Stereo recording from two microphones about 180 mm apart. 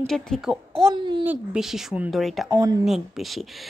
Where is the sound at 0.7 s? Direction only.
25° right (ahead or behind).